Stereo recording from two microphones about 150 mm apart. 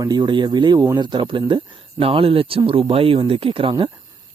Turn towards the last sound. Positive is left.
turn(degrees=-35)  # may be behind; listen again after turning